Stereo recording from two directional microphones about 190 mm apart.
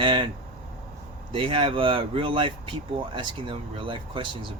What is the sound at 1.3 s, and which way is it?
Speech, 25° right (ahead or behind).